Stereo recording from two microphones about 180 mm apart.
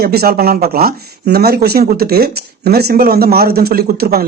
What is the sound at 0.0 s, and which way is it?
Speech, 60° right (ahead or behind).